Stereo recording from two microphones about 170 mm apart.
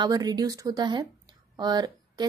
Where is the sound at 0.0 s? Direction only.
25° right (ahead or behind).